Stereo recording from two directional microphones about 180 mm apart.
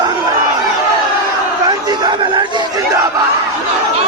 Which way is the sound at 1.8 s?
25° right (ahead or behind).